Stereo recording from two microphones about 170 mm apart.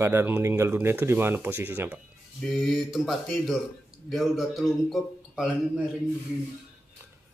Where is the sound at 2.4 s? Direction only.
Centre (ahead or behind).